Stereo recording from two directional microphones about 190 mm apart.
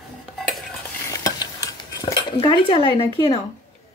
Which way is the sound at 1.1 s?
20° left (ahead or behind).